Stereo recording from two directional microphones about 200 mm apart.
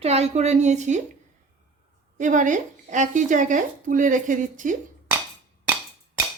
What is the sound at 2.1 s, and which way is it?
Speech, 40° right (ahead or behind).